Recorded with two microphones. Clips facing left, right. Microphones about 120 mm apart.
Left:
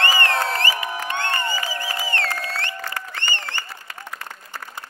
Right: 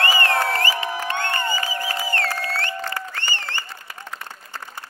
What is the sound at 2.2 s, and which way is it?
Music, 40° right (ahead or behind).